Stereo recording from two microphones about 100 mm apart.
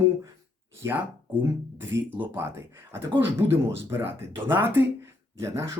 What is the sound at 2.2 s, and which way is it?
Speech, 20° right (ahead or behind).